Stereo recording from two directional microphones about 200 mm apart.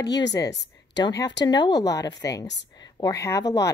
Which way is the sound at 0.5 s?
60° left (ahead or behind).